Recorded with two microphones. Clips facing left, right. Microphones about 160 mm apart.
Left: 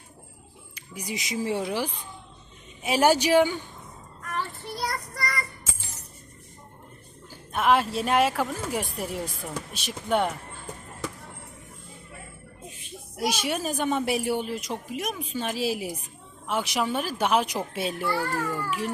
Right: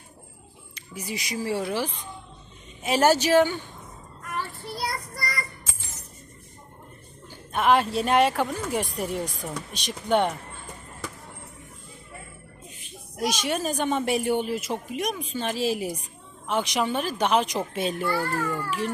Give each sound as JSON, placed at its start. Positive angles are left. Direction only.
{"t": 0.8, "sound": "speech", "side_deg": 15}
{"t": 4.8, "sound": "child singing", "side_deg": -10}
{"t": 7.5, "sound": "speech", "side_deg": 0}
{"t": 13.1, "sound": "speech", "side_deg": 10}